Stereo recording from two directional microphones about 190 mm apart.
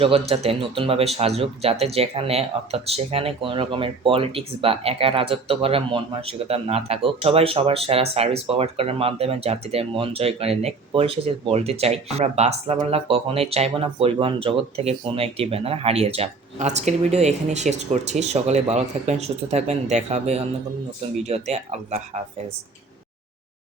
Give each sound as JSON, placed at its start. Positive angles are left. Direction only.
{"t": 0.0, "sound": "speech", "side_deg": -30}